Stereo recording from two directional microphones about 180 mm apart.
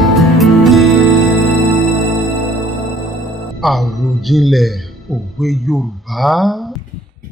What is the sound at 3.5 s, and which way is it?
A man's voice, centre (ahead or behind).